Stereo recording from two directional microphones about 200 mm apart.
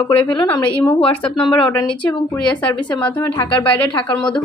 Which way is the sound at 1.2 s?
5° left (ahead or behind).